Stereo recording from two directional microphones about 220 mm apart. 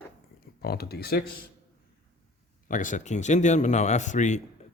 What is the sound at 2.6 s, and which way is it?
Speech, 35° left (ahead or behind).